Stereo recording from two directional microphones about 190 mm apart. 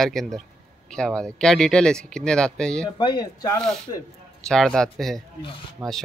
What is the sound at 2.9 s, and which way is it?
Speech, 25° left (ahead or behind).